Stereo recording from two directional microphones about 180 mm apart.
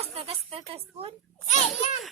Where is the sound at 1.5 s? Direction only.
40° left (ahead or behind).